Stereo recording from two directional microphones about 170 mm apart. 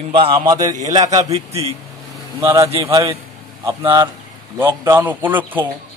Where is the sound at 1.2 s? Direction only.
40° right (ahead or behind).